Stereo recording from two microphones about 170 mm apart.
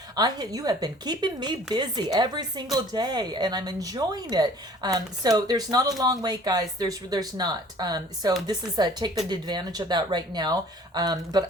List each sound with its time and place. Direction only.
0.2 s speech: 25° right (ahead or behind)